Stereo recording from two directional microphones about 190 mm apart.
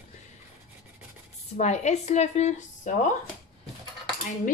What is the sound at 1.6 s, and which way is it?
Speech, 35° left (ahead or behind).